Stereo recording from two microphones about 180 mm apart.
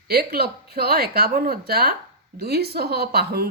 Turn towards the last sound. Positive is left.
turn(degrees=-60)  # may be behind; listen again after turning